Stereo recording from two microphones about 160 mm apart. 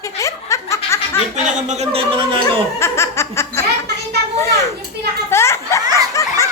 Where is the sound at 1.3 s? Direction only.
50° right (ahead or behind); by 2.6 s 35° right (ahead or behind).